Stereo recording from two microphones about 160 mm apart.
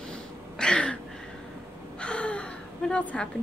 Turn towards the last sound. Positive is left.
turn(degrees=5)  # may be behind; listen again after turning